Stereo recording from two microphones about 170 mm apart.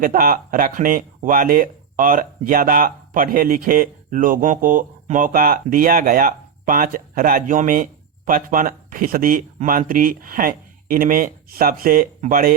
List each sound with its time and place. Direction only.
0.0 s speech: 55° right (ahead or behind)